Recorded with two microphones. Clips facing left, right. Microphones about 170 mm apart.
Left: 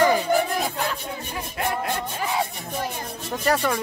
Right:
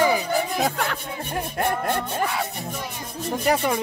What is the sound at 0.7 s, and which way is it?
Music, 55° right (ahead or behind).